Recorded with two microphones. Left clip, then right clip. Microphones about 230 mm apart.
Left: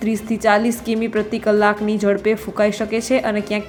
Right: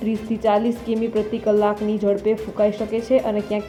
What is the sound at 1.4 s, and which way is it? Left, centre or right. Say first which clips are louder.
Speech: left 2 dB; left.